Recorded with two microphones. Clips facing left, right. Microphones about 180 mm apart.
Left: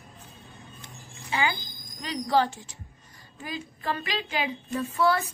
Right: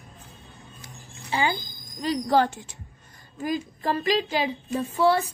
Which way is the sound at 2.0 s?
40° right (ahead or behind).